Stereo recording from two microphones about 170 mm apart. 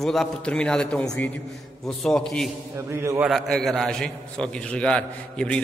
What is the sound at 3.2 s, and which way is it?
A man's voice, centre (ahead or behind).